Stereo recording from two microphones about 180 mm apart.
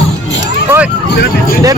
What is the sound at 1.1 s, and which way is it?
Speech, 65° left (ahead or behind).